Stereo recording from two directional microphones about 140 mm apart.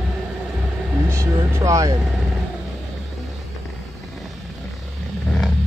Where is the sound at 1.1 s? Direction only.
20° right (ahead or behind).